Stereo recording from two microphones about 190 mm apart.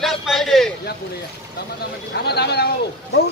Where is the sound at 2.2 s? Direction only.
60° left (ahead or behind).